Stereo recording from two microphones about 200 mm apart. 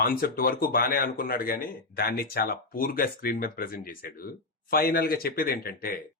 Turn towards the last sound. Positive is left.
turn(degrees=45)  # may be behind; listen again after turning